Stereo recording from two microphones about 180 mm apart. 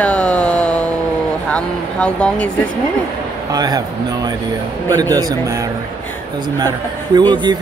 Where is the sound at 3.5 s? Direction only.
20° right (ahead or behind).